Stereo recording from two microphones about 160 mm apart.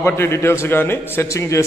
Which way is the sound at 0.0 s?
15° left (ahead or behind).